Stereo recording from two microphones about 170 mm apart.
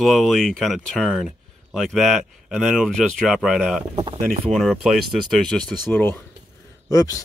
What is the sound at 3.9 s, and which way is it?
Speech, 35° right (ahead or behind).